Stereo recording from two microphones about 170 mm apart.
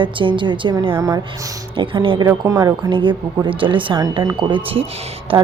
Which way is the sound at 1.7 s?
30° right (ahead or behind).